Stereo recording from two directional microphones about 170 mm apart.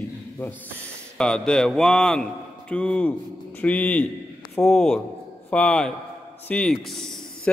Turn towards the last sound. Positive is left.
turn(degrees=0)  # may be behind; listen again after turning